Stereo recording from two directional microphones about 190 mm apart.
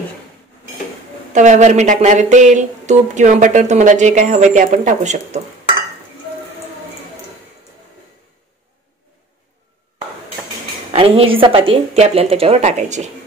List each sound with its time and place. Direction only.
1.3 s speech: 40° right (ahead or behind)
10.9 s speech: 30° right (ahead or behind)